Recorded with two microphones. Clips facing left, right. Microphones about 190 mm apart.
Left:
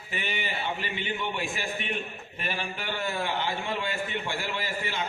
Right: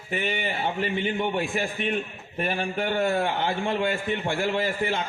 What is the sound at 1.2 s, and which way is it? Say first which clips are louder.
A man's voice: right 6 dB; 50° right (ahead or behind).